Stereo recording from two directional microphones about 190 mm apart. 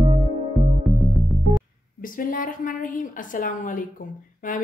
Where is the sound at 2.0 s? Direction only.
45° left (ahead or behind).